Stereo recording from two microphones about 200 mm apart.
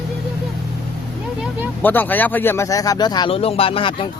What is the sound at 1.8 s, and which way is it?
Speech, 10° left (ahead or behind).